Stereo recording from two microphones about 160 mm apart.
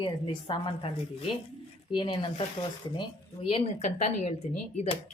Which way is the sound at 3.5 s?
40° left (ahead or behind).